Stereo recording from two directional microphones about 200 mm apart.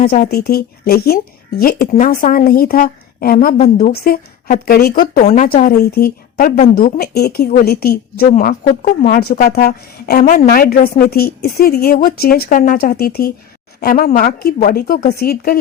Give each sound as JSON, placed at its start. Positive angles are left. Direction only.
{"t": 0.1, "sound": "a woman's voice", "side_deg": 50}
{"t": 1.9, "sound": "a woman's voice", "side_deg": 40}
{"t": 3.3, "sound": "a woman's voice", "side_deg": 35}
{"t": 3.9, "sound": "a woman's voice", "side_deg": 50}